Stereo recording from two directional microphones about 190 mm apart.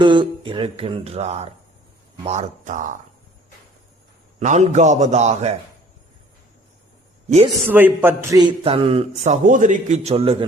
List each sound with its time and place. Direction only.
0.0 s a man's voice: 25° right (ahead or behind); by 3.0 s 40° right (ahead or behind)
4.4 s a man's voice: 40° right (ahead or behind)
7.7 s speech: 10° right (ahead or behind); by 10.3 s 30° right (ahead or behind)